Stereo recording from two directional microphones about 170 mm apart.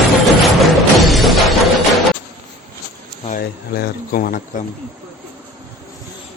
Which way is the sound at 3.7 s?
60° left (ahead or behind).